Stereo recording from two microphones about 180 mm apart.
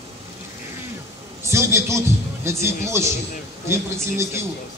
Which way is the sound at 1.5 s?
15° right (ahead or behind).